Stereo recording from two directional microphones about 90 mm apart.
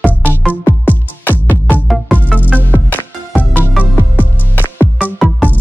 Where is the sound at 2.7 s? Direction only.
20° left (ahead or behind).